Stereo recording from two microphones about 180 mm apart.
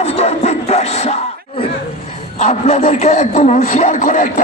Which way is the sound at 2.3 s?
45° left (ahead or behind).